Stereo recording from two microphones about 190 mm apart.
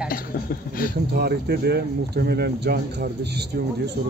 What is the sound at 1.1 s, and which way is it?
Speech, 60° right (ahead or behind).